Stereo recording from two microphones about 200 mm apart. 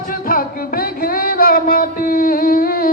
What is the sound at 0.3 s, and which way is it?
Music, 45° left (ahead or behind).